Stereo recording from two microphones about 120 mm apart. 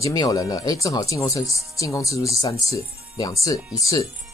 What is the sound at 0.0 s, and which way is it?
Speech, 30° left (ahead or behind).